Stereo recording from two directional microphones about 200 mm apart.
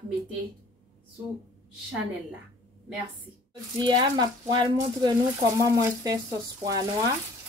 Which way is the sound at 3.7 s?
20° right (ahead or behind).